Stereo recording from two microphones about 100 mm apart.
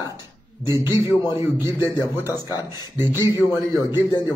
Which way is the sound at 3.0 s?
25° right (ahead or behind).